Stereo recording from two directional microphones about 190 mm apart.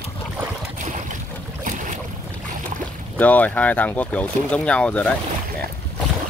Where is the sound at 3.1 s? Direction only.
10° left (ahead or behind).